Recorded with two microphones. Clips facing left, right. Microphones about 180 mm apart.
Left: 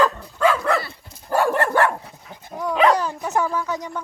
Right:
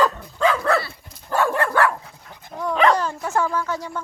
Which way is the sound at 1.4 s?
20° left (ahead or behind).